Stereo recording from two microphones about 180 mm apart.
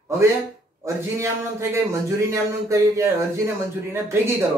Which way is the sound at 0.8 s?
15° right (ahead or behind).